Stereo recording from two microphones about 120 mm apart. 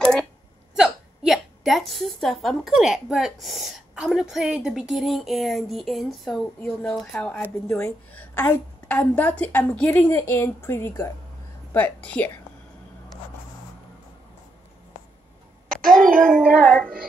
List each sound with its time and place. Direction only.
0.0 s a sound: 5° left (ahead or behind)
0.7 s a woman's voice: 5° right (ahead or behind); by 12.3 s 10° left (ahead or behind)
15.9 s a child's voice: centre (ahead or behind)
16.4 s music: 10° right (ahead or behind)